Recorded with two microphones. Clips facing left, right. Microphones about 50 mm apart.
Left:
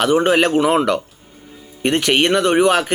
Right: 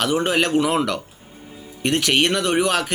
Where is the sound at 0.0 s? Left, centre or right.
Centre.